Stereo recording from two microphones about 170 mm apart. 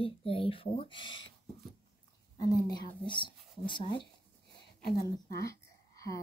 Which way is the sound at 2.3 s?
25° left (ahead or behind).